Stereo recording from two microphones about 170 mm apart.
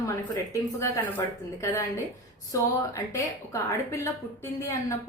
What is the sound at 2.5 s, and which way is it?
A woman's voice, 20° left (ahead or behind).